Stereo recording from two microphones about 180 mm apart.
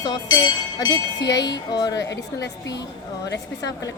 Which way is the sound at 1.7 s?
20° left (ahead or behind).